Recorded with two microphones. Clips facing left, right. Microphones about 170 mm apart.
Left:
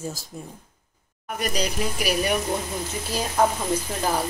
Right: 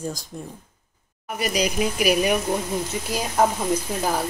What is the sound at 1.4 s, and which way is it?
A woman's voice, 10° right (ahead or behind).